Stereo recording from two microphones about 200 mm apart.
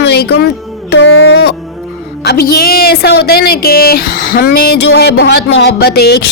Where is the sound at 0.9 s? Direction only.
65° left (ahead or behind).